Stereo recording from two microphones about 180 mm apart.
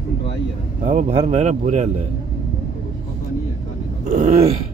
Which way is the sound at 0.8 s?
40° right (ahead or behind).